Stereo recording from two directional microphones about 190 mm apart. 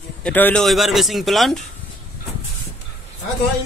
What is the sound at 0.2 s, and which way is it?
Speech, 10° left (ahead or behind).